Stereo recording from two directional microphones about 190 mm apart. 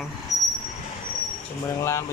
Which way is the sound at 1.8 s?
15° left (ahead or behind).